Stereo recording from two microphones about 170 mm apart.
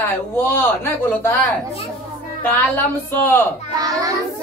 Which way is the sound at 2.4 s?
10° left (ahead or behind).